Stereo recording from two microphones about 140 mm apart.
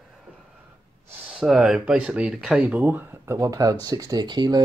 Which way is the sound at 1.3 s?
Centre (ahead or behind).